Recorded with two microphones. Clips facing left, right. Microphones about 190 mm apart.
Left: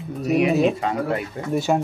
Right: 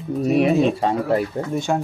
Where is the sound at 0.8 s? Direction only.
35° right (ahead or behind).